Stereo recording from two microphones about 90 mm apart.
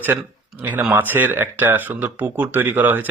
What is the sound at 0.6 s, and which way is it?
Speech, 15° right (ahead or behind).